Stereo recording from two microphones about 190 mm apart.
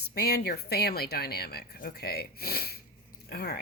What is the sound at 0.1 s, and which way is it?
Speech, 55° left (ahead or behind).